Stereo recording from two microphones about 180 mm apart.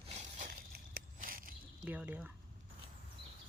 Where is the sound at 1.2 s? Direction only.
50° right (ahead or behind).